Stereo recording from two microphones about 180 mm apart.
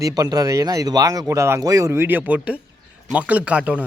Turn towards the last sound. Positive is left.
turn(degrees=-5)  # may be behind; listen again after turning